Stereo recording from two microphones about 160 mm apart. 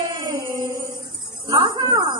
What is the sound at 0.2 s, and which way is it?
Music, 25° right (ahead or behind).